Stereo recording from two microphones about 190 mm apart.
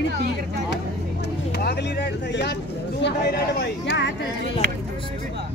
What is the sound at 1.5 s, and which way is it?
Speech, 60° left (ahead or behind).